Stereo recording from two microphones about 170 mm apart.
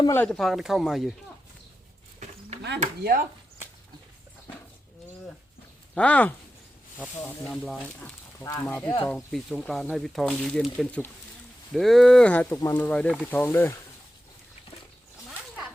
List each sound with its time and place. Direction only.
0.0 s speech: 15° left (ahead or behind)
0.3 s speech: centre (ahead or behind)
3.0 s speech: 60° right (ahead or behind)
5.9 s speech: 5° left (ahead or behind)
8.4 s speech: 15° left (ahead or behind)
9.0 s speech: centre (ahead or behind)